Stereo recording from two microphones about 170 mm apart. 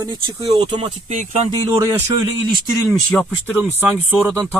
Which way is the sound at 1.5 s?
20° right (ahead or behind).